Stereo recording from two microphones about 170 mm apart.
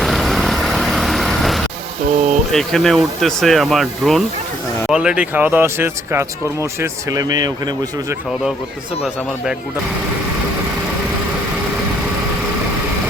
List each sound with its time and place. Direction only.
0.0 s vehicle: centre (ahead or behind)
2.0 s a sound: 45° right (ahead or behind)
2.5 s speech: centre (ahead or behind); by 7.7 s 25° right (ahead or behind)